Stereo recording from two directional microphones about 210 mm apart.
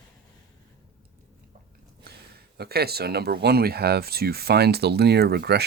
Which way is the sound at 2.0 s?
50° right (ahead or behind).